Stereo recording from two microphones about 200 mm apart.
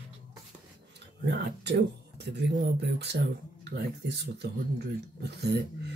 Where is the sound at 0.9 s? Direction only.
55° right (ahead or behind).